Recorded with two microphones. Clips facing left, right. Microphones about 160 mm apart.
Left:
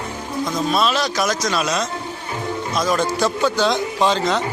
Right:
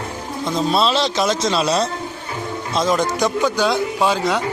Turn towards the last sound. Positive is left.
turn(degrees=-10)  # may be behind; listen again after turning